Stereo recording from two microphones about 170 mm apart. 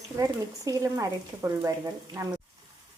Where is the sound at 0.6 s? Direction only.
20° right (ahead or behind).